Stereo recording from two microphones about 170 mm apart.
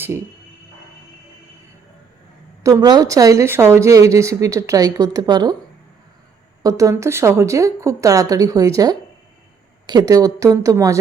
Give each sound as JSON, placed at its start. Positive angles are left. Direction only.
{"t": 2.6, "sound": "a woman's voice", "side_deg": -20}
{"t": 6.6, "sound": "a woman's voice", "side_deg": -20}